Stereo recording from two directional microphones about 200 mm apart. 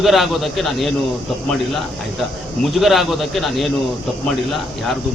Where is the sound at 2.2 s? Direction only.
Centre (ahead or behind).